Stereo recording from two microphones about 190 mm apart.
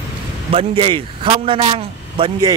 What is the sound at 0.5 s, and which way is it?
A man's voice, 30° right (ahead or behind).